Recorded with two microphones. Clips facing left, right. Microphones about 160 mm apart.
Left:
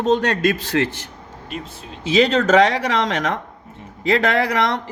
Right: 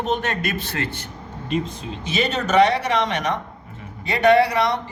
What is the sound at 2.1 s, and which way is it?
A man's voice, 90° left.